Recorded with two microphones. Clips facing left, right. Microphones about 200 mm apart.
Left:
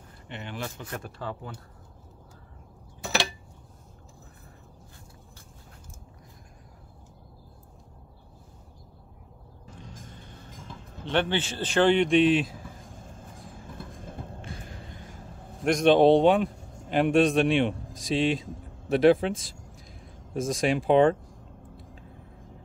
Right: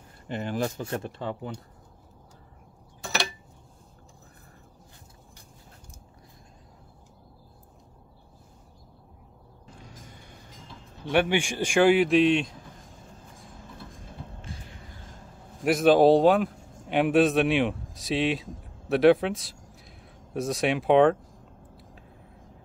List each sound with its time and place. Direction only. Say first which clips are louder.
0.3 s speech: right 8 dB; 40° right (ahead or behind); by 1.5 s 20° right (ahead or behind)
9.8 s music: left 2 dB; 10° right (ahead or behind)
11.1 s speech: right 3 dB; 10° right (ahead or behind)
13.8 s a sound: left 4 dB; 50° left (ahead or behind)
15.6 s a man's voice: even; 5° right (ahead or behind)